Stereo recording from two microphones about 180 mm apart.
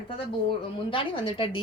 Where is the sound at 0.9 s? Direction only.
30° left (ahead or behind).